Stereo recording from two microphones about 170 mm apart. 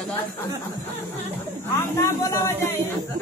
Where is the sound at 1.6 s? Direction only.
15° left (ahead or behind).